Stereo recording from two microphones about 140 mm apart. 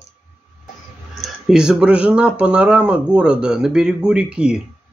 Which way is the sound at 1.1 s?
5° right (ahead or behind).